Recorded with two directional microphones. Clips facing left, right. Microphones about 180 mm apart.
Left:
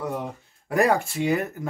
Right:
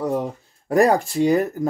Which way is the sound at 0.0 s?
35° right (ahead or behind).